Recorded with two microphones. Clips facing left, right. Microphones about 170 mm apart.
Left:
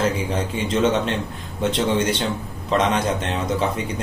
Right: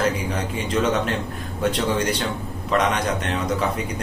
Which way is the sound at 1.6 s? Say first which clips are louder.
Left 2 dB; 25° left (ahead or behind).